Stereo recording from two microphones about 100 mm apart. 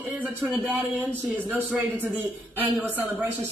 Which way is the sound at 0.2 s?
15° right (ahead or behind).